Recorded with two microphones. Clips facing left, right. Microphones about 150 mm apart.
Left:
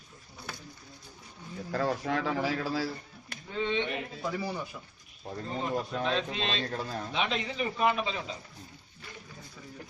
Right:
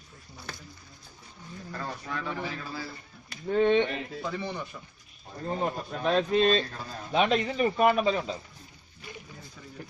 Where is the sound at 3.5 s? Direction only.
55° right (ahead or behind).